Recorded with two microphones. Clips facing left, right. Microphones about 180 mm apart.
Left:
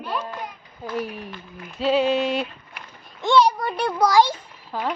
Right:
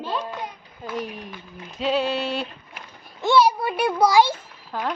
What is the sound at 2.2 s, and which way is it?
A woman's voice, 5° right (ahead or behind).